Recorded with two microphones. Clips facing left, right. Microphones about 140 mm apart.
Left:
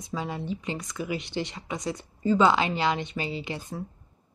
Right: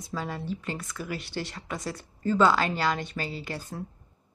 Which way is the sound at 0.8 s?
Centre (ahead or behind).